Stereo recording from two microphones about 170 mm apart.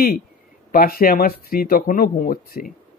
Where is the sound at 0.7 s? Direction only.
60° left (ahead or behind).